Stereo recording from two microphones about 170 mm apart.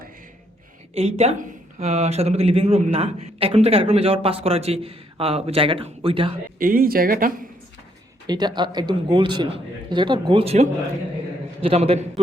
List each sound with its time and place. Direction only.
0.9 s speech: 40° right (ahead or behind)
6.6 s speech: 60° right (ahead or behind)
8.3 s a man's voice: 25° right (ahead or behind)